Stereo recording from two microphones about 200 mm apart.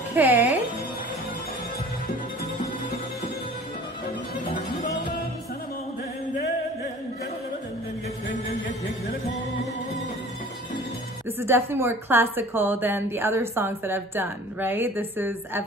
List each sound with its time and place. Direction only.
0.1 s speech: 10° right (ahead or behind)
8.3 s a sound: 40° left (ahead or behind)
11.2 s a woman's voice: 10° right (ahead or behind)